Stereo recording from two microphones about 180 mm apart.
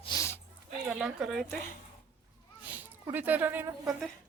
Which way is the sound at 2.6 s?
10° right (ahead or behind).